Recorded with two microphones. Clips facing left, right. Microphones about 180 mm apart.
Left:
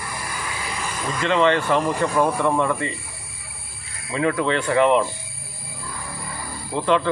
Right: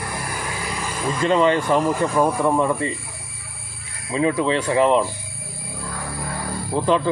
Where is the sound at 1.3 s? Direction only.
10° right (ahead or behind).